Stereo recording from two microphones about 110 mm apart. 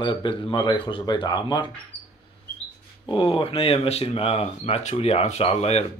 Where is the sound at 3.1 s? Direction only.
50° left (ahead or behind); by 5.9 s 70° left (ahead or behind).